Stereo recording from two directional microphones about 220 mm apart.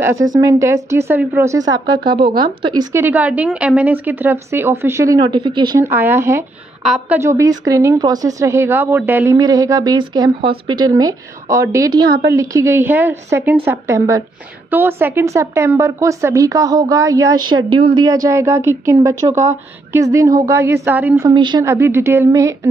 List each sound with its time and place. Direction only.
0.3 s a woman's voice: 15° right (ahead or behind)